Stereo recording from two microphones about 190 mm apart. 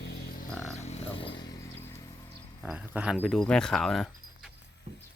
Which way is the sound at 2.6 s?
5° right (ahead or behind).